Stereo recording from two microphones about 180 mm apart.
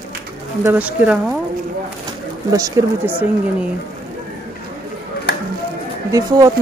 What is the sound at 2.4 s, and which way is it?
Speech, 20° right (ahead or behind).